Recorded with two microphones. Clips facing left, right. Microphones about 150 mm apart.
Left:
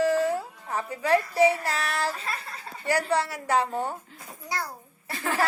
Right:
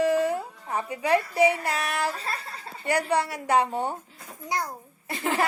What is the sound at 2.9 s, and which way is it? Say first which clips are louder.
A woman's voice: right 1 dB; 20° right (ahead or behind).